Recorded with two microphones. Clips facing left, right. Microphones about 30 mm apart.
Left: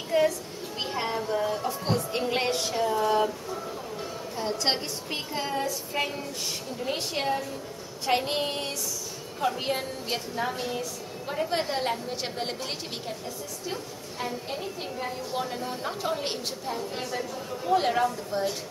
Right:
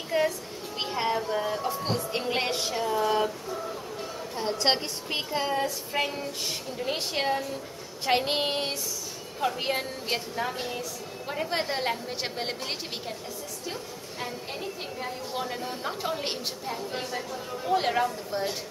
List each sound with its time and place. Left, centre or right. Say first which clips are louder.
0.1 s a woman's voice: left 2 dB; centre
8.3 s a sound: right 2 dB; right
9.6 s a woman's voice: even; centre
14.2 s a woman's voice: left 2 dB; centre